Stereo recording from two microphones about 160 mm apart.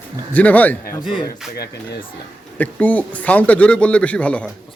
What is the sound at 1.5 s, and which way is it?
Speech, 85° left.